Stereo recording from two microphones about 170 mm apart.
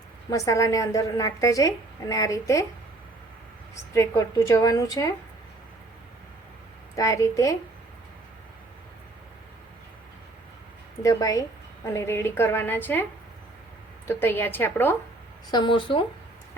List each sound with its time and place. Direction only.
0.3 s a woman's voice: 20° left (ahead or behind)
3.9 s a woman's voice: 20° left (ahead or behind)
6.9 s a woman's voice: 20° left (ahead or behind)
11.0 s a woman's voice: 20° left (ahead or behind)
14.1 s a woman's voice: 15° left (ahead or behind)
15.4 s a woman's voice: 25° left (ahead or behind)